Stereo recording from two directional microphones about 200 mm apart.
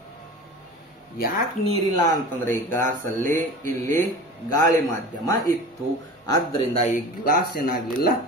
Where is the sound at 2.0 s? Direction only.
10° left (ahead or behind).